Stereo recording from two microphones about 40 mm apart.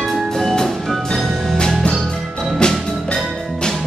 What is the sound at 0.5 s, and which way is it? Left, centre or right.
Music, centre.